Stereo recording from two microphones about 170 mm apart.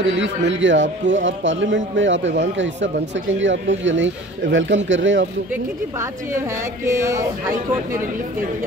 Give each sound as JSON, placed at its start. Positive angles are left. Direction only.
{"t": 0.0, "sound": "a man's voice", "side_deg": -90}
{"t": 5.5, "sound": "speech", "side_deg": -15}